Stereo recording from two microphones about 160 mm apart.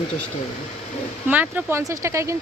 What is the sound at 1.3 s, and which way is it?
A woman's voice, 10° right (ahead or behind).